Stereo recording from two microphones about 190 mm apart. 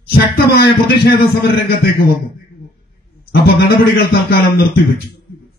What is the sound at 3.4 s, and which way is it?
A man's voice, 55° left (ahead or behind).